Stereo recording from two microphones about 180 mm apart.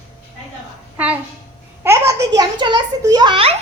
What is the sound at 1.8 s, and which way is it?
A woman's voice, 15° right (ahead or behind).